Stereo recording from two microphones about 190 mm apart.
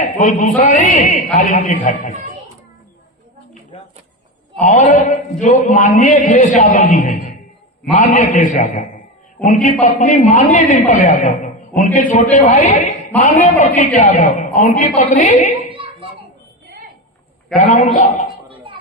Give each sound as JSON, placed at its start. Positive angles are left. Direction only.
{"t": 0.0, "sound": "a man's voice", "side_deg": 40}
{"t": 4.6, "sound": "a man's voice", "side_deg": 40}
{"t": 17.5, "sound": "a man's voice", "side_deg": 40}
{"t": 18.4, "sound": "a sound", "side_deg": -25}